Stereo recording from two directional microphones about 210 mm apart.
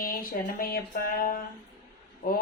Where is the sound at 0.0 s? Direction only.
45° left (ahead or behind).